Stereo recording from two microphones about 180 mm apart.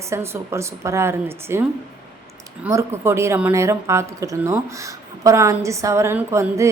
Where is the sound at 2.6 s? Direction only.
15° right (ahead or behind).